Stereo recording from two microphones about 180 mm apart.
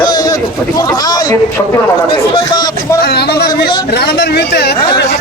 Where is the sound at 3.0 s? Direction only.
65° left (ahead or behind).